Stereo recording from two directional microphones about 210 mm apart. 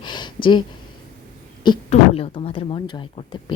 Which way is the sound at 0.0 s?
20° left (ahead or behind).